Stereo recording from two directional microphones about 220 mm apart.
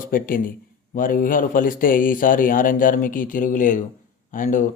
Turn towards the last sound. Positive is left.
turn(degrees=35)  # may be behind; listen again after turning